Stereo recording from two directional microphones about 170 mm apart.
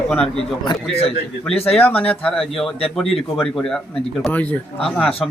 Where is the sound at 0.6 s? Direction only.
30° left (ahead or behind).